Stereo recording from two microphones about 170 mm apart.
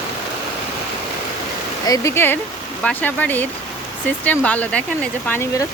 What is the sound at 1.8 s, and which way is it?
Speech, 20° left (ahead or behind).